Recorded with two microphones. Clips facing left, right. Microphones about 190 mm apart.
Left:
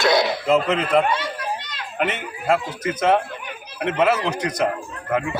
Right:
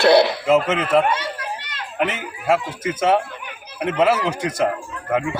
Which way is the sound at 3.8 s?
5° right (ahead or behind).